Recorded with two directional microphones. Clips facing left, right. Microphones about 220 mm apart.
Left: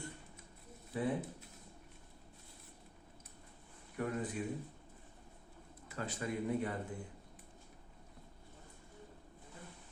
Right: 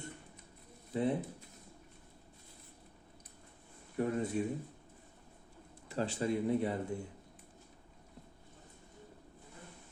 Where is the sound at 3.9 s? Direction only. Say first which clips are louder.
Right 5 dB; 25° right (ahead or behind).